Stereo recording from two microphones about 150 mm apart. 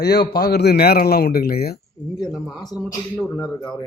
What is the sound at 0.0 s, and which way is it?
A man's voice, 90° left.